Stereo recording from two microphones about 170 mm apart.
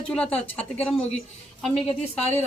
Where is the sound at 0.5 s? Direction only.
10° left (ahead or behind).